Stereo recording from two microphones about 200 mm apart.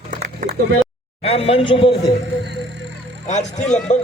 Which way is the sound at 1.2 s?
30° left (ahead or behind).